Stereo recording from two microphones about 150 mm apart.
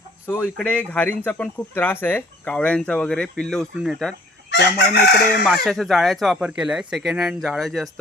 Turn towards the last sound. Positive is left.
turn(degrees=0)  # may be behind; listen again after turning